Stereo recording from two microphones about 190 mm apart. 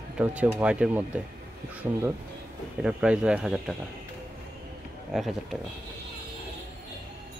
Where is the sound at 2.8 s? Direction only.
5° right (ahead or behind).